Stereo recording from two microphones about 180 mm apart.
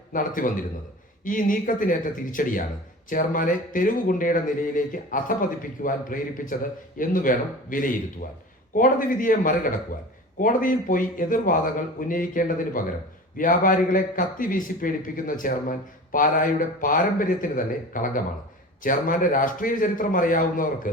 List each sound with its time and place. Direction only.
0.1 s speech: 50° left (ahead or behind)